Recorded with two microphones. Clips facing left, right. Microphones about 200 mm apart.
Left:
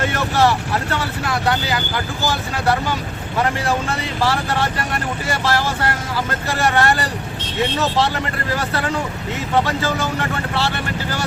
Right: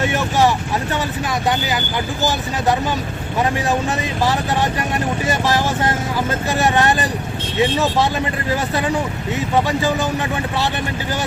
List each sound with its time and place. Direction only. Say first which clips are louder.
0.1 s speech: right 1 dB; 15° right (ahead or behind)
3.7 s speech: right 2 dB; 15° right (ahead or behind)